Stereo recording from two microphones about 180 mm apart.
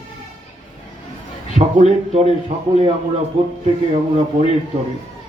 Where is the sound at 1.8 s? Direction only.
40° right (ahead or behind).